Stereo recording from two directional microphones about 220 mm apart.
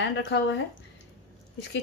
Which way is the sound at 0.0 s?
55° left (ahead or behind).